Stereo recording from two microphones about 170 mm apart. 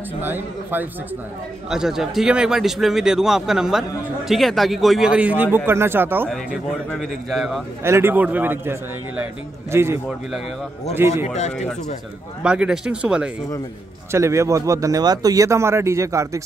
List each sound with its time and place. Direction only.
0.2 s a man's voice: 10° right (ahead or behind)
6.2 s a man's voice: 5° left (ahead or behind)
7.8 s speech: 15° right (ahead or behind)
11.2 s speech: 40° left (ahead or behind)
12.4 s a man's voice: 5° right (ahead or behind)
14.1 s speech: 15° right (ahead or behind)